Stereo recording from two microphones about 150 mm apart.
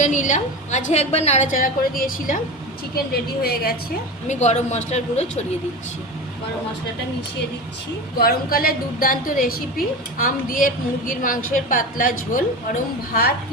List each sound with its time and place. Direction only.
0.0 s a woman's voice: 55° left (ahead or behind)
1.5 s a woman's voice: 70° left (ahead or behind)
2.9 s a woman's voice: 90° left
4.3 s a woman's voice: 50° left (ahead or behind)
8.2 s a woman's voice: 85° left; by 12.4 s 65° left (ahead or behind)